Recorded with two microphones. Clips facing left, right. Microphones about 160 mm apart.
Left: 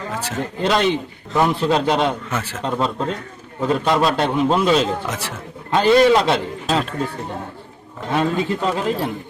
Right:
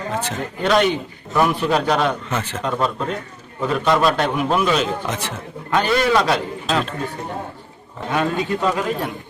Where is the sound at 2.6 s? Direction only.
30° left (ahead or behind).